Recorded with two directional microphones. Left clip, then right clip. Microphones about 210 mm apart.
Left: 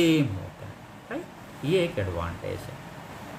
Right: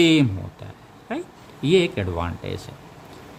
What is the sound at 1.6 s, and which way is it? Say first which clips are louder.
Speech: right 6 dB; 55° right (ahead or behind).